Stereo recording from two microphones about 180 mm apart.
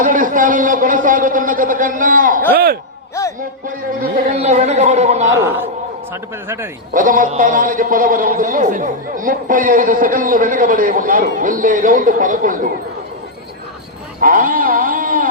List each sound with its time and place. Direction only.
0.0 s a man's voice: 50° right (ahead or behind)
3.2 s music: 15° left (ahead or behind)
4.4 s speech: 35° right (ahead or behind)
5.4 s a man's voice: 10° right (ahead or behind)
6.9 s a man's voice: 50° right (ahead or behind)
14.2 s a man's voice: 50° right (ahead or behind)